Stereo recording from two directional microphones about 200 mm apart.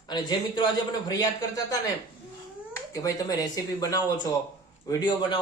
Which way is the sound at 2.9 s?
15° left (ahead or behind).